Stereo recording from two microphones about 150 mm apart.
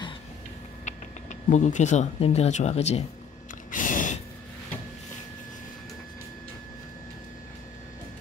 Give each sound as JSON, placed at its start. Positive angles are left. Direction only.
{"t": 0.8, "sound": "speech", "side_deg": 55}
{"t": 3.7, "sound": "gasp", "side_deg": 60}